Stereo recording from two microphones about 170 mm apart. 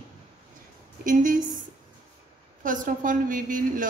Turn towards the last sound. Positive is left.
turn(degrees=-55)  # may be behind; listen again after turning